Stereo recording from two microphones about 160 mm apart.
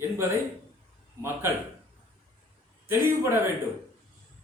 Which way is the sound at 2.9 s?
15° right (ahead or behind).